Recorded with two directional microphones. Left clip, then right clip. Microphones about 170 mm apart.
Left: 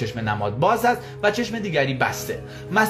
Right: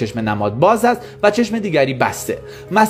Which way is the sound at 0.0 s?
35° right (ahead or behind).